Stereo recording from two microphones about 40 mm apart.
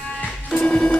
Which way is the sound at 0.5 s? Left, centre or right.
Left.